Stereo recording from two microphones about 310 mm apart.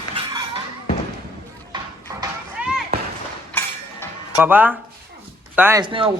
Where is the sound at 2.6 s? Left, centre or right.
Centre.